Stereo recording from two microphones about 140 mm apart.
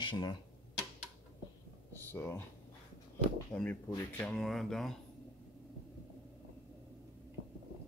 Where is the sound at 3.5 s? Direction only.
10° left (ahead or behind).